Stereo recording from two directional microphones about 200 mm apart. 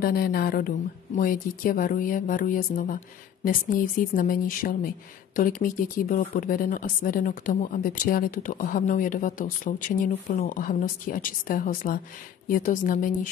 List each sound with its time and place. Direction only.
0.0 s a woman's voice: 45° left (ahead or behind)